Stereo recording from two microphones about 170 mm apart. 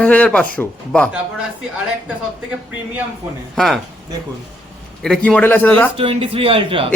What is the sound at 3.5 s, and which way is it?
Speech, centre (ahead or behind).